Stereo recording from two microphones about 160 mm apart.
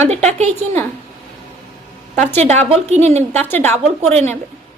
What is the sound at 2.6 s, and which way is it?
Speech, 45° right (ahead or behind).